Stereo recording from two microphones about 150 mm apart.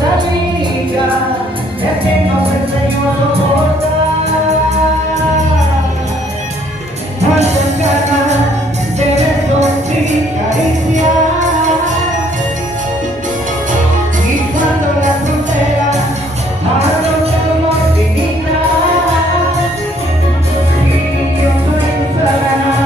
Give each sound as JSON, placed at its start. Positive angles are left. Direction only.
{"t": 10.5, "sound": "music", "side_deg": -55}